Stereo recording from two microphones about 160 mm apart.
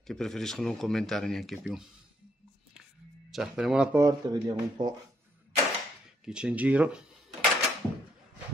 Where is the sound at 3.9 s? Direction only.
20° right (ahead or behind).